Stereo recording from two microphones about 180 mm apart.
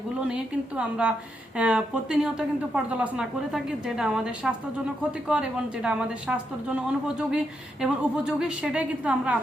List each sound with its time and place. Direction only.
0.8 s a woman's voice: 5° right (ahead or behind)